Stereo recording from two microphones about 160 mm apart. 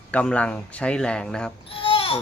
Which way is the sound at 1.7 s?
35° left (ahead or behind).